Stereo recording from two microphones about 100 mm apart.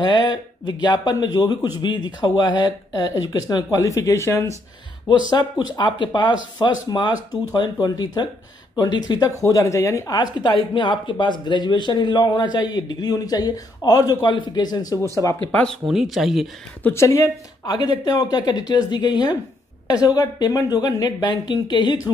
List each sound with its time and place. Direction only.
0.0 s speech: 45° left (ahead or behind); by 4.6 s 30° left (ahead or behind)
5.3 s speech: 45° left (ahead or behind); by 10.1 s 30° left (ahead or behind)
10.7 s speech: 55° left (ahead or behind)
15.4 s speech: 15° left (ahead or behind)
15.9 s speech: centre (ahead or behind)
16.8 s speech: 30° left (ahead or behind)
17.6 s speech: 45° left (ahead or behind)